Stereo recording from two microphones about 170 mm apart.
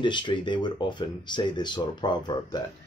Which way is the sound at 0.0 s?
25° left (ahead or behind).